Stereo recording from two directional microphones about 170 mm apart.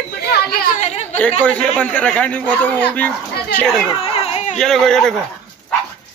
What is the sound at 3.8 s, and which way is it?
Baby cry, 30° left (ahead or behind).